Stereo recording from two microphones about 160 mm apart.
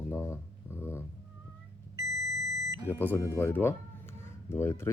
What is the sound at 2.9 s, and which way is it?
Speech, 15° left (ahead or behind).